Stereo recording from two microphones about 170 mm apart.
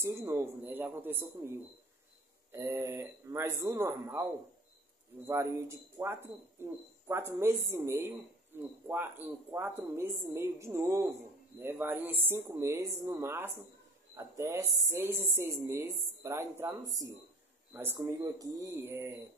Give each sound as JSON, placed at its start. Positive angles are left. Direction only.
{"t": 0.0, "sound": "a woman's voice", "side_deg": -15}